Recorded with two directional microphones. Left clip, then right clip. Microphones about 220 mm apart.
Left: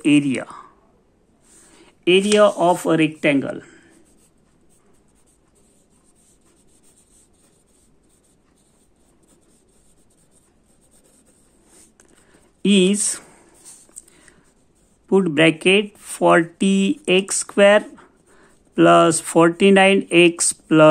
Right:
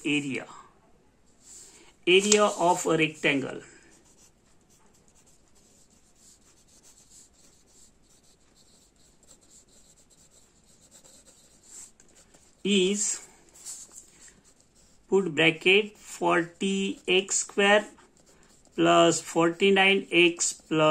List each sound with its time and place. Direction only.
0.0 s speech: 45° left (ahead or behind)
1.8 s speech: 35° left (ahead or behind)
12.6 s speech: 40° left (ahead or behind)
15.0 s speech: 40° left (ahead or behind)